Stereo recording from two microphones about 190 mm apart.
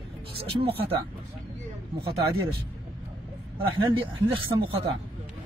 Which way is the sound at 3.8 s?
25° right (ahead or behind).